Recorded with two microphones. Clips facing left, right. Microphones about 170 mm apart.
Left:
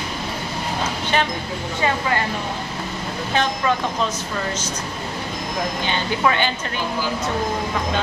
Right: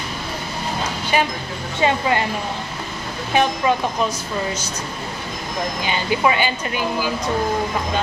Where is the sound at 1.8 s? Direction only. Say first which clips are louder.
Right 4 dB; 20° right (ahead or behind).